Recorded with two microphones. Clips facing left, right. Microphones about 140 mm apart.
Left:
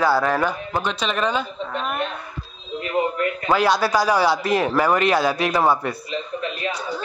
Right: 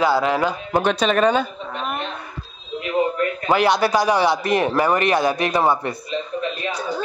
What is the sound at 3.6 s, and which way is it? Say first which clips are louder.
A man's voice: right 1 dB; 20° right (ahead or behind).